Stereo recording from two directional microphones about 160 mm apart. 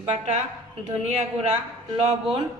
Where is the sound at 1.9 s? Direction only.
40° right (ahead or behind).